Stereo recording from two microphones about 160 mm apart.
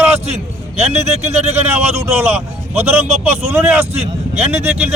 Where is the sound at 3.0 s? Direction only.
40° right (ahead or behind).